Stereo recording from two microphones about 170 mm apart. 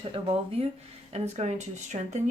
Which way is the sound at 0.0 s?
30° right (ahead or behind).